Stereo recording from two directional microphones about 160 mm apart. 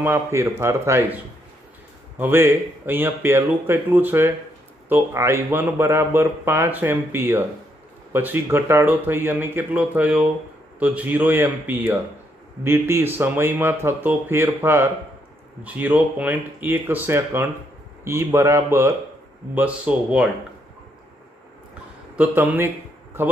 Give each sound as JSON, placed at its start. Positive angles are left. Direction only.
{"t": 0.0, "sound": "a man's voice", "side_deg": -15}
{"t": 2.1, "sound": "a man's voice", "side_deg": -10}
{"t": 22.1, "sound": "a man's voice", "side_deg": -10}